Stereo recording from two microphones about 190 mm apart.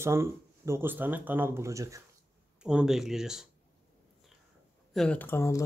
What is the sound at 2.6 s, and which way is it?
Speech, 5° right (ahead or behind).